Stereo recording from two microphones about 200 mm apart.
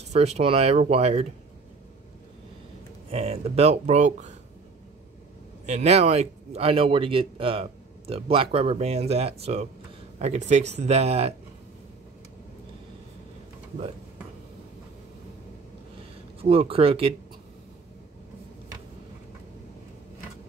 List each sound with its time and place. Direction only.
0.1 s speech: 30° right (ahead or behind)
3.1 s speech: 30° right (ahead or behind)
5.7 s speech: 30° right (ahead or behind)
16.3 s speech: 30° right (ahead or behind)